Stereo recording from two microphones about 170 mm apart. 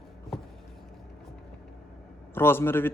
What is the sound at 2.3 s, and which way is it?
Speech, 15° left (ahead or behind).